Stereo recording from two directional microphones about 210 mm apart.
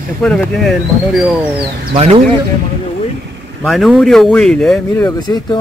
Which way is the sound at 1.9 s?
30° right (ahead or behind).